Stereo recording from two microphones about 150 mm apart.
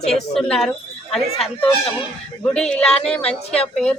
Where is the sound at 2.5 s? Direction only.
5° left (ahead or behind).